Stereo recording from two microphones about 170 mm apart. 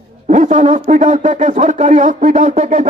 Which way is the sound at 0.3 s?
45° right (ahead or behind).